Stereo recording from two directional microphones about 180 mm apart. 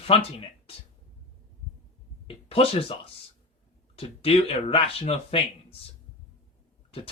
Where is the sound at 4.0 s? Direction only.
30° left (ahead or behind).